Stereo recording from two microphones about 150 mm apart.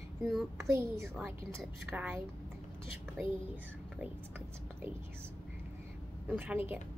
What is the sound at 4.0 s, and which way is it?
Speech, 15° right (ahead or behind).